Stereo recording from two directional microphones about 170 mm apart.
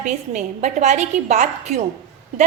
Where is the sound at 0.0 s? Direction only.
45° right (ahead or behind).